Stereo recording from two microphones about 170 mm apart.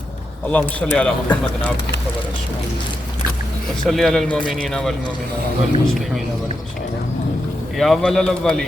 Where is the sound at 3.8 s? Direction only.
Centre (ahead or behind).